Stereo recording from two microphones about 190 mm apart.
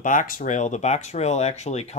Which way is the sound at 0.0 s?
45° left (ahead or behind).